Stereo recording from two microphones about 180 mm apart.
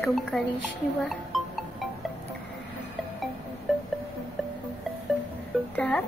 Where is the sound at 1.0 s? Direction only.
Centre (ahead or behind).